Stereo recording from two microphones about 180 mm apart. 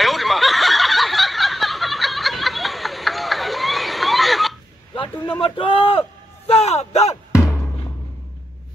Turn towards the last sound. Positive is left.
turn(degrees=15)  # may be behind; listen again after turning